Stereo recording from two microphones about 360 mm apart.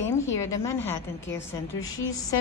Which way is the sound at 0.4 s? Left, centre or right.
Centre.